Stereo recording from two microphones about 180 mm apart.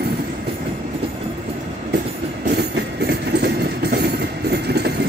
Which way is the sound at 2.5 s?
65° right (ahead or behind).